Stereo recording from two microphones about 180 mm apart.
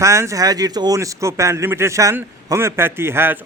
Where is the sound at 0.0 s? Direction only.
15° right (ahead or behind).